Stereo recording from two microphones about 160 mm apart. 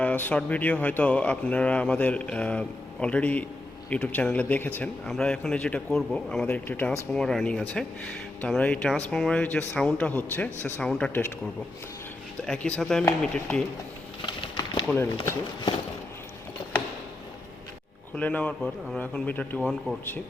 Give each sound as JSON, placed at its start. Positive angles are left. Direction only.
{"t": 0.0, "sound": "speech", "side_deg": 10}
{"t": 12.5, "sound": "speech", "side_deg": 5}
{"t": 14.3, "sound": "a sound", "side_deg": 30}
{"t": 18.2, "sound": "speech", "side_deg": 10}